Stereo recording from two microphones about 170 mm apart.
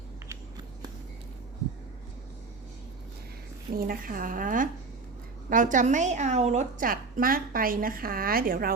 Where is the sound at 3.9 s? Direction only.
55° right (ahead or behind).